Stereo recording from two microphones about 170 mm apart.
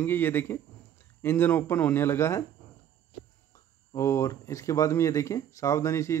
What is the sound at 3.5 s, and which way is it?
Speech, 15° left (ahead or behind).